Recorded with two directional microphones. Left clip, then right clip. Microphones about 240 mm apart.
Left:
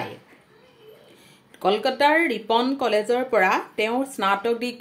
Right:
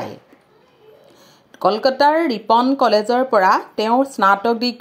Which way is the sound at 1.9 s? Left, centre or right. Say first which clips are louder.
Right 4 dB; right.